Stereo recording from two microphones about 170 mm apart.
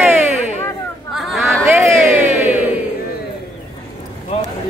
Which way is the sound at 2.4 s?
10° right (ahead or behind).